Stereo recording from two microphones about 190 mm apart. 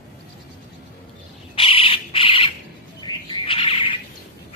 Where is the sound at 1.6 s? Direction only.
30° left (ahead or behind).